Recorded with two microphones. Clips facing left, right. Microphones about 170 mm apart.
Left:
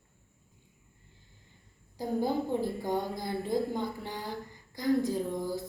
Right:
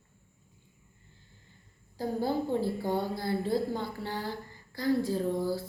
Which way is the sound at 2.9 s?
15° left (ahead or behind).